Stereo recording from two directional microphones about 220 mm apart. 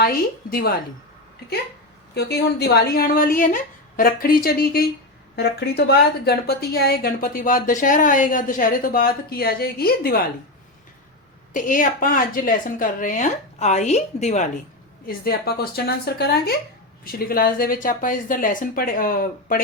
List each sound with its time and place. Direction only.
2.1 s a woman's voice: 45° left (ahead or behind)
11.5 s a woman's voice: 35° left (ahead or behind)
15.0 s a woman's voice: 45° left (ahead or behind)